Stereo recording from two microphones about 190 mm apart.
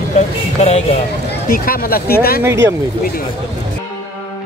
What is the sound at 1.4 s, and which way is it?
Speech, 50° left (ahead or behind).